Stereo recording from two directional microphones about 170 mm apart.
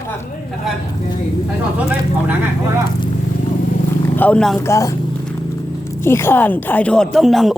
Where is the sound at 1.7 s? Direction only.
10° right (ahead or behind).